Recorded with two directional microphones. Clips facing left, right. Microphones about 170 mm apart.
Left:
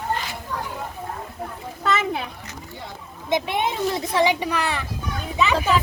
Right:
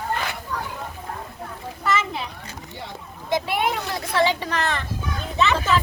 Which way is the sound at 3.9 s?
20° left (ahead or behind).